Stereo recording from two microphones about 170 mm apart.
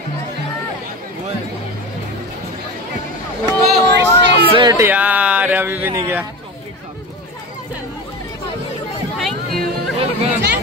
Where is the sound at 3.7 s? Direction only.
90° right.